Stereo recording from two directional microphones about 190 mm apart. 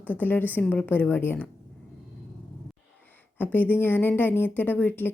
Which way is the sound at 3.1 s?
10° left (ahead or behind).